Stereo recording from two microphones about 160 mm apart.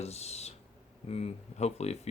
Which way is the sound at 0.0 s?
40° left (ahead or behind).